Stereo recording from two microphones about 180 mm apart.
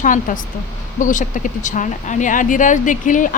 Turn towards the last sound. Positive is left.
turn(degrees=45)  # may be behind; listen again after turning